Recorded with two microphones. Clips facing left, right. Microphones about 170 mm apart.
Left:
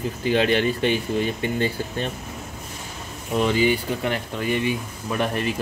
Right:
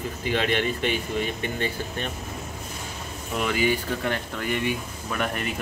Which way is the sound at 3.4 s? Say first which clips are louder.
Left 4 dB; 25° left (ahead or behind).